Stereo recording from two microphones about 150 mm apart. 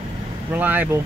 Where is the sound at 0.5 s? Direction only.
10° right (ahead or behind).